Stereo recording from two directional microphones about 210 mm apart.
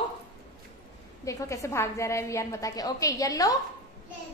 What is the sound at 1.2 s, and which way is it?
A woman's voice, 15° left (ahead or behind).